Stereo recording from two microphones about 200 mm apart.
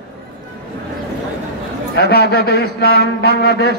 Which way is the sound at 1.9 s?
55° left (ahead or behind).